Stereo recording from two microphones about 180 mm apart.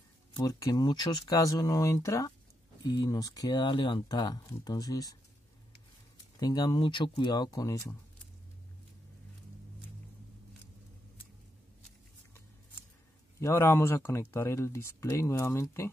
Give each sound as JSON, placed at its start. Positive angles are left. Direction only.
{"t": 0.3, "sound": "speech", "side_deg": 20}
{"t": 6.4, "sound": "speech", "side_deg": 20}
{"t": 13.4, "sound": "speech", "side_deg": 15}